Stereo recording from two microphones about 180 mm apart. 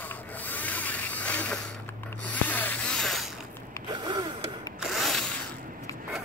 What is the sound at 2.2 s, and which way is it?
Music, 10° left (ahead or behind).